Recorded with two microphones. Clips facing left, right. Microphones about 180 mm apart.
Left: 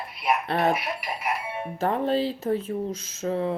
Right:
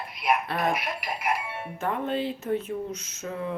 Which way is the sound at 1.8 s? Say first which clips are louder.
Left 4 dB; 35° left (ahead or behind).